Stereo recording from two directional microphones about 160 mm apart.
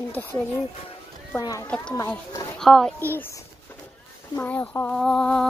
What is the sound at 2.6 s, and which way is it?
Speech, 5° left (ahead or behind).